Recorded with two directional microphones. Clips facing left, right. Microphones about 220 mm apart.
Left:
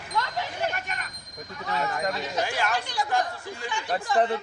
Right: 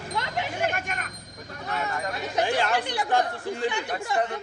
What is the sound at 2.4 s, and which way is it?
Speech, 30° right (ahead or behind).